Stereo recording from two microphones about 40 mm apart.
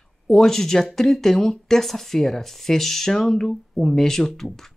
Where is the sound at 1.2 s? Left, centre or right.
Centre.